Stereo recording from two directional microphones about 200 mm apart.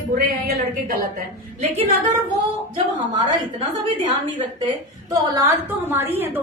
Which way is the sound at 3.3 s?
25° right (ahead or behind).